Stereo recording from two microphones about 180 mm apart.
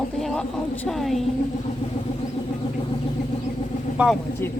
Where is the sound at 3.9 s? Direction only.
5° right (ahead or behind).